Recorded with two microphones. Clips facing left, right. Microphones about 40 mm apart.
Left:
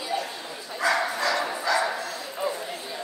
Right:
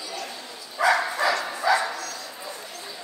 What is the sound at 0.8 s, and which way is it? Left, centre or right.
Dog, centre.